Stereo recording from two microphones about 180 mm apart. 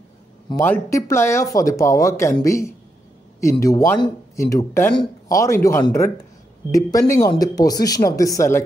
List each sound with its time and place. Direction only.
0.6 s speech: 15° left (ahead or behind)